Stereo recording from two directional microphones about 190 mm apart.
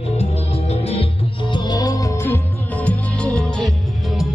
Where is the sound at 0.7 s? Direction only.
30° left (ahead or behind).